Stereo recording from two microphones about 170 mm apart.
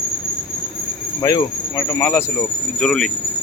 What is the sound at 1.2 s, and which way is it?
Speech, 15° left (ahead or behind).